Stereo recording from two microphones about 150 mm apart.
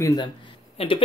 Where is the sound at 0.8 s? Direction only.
40° left (ahead or behind).